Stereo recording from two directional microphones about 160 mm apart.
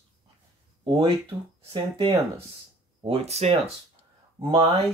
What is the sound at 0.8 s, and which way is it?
Speech, 30° right (ahead or behind).